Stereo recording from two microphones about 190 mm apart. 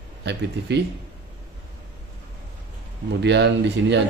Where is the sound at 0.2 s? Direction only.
65° right (ahead or behind).